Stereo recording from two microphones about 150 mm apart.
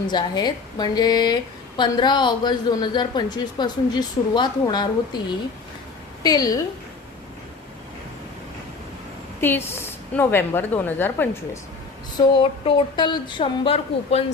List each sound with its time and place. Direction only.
0.1 s a woman's voice: 30° left (ahead or behind)
6.2 s a woman's voice: 25° left (ahead or behind)
9.4 s a woman's voice: 15° left (ahead or behind)
12.1 s speech: 30° left (ahead or behind)